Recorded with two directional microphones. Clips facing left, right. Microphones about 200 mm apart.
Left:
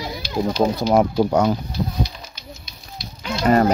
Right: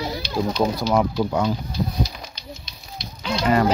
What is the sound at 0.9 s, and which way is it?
Speech, 45° left (ahead or behind).